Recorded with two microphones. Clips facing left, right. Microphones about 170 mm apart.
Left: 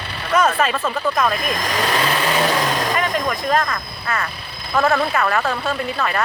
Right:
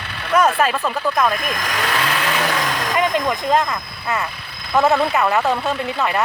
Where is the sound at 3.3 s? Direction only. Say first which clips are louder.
Right 2 dB; 20° right (ahead or behind).